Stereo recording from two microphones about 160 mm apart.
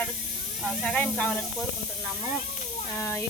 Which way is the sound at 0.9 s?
5° left (ahead or behind).